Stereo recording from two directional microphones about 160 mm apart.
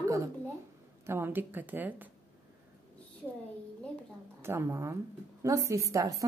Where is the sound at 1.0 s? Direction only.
15° right (ahead or behind).